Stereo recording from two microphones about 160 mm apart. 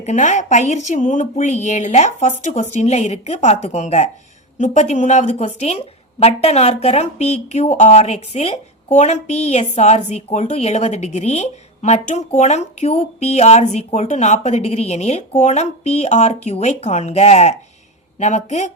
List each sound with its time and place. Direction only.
0.0 s a woman's voice: 50° left (ahead or behind)